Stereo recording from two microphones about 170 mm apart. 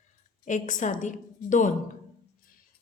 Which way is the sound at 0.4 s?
45° left (ahead or behind).